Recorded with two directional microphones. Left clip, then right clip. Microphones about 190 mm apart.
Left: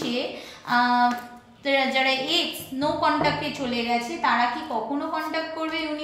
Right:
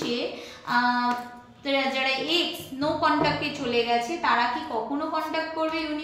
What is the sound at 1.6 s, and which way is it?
A woman's voice, 35° left (ahead or behind).